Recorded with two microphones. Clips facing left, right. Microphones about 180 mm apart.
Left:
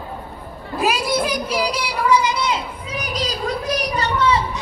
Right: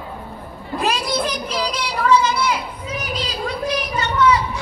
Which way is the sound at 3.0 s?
40° left (ahead or behind).